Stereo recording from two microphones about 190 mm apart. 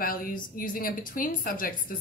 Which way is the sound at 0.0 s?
45° left (ahead or behind).